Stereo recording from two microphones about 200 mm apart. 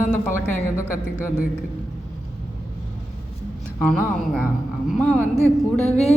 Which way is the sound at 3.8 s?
5° left (ahead or behind).